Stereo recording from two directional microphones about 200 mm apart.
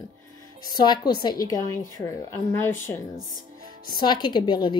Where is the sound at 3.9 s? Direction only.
20° left (ahead or behind).